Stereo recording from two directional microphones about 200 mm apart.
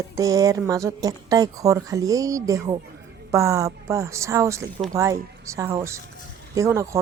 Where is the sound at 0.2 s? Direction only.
15° right (ahead or behind).